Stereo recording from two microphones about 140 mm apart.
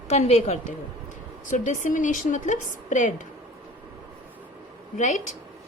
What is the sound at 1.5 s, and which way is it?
A woman's voice, 65° left (ahead or behind).